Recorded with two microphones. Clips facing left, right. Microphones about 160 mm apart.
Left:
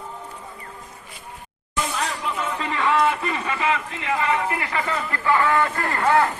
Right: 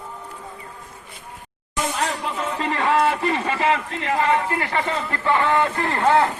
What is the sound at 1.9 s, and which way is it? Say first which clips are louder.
Speech: right 2 dB; 40° right (ahead or behind).